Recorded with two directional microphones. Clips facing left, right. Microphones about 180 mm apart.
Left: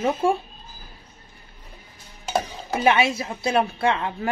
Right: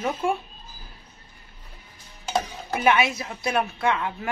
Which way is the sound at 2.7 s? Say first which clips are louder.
Left 2 dB; 30° left (ahead or behind).